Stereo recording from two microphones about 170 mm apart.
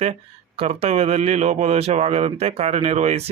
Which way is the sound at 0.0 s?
35° right (ahead or behind).